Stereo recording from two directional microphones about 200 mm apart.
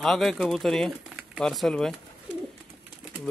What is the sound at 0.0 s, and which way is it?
Speech, centre (ahead or behind).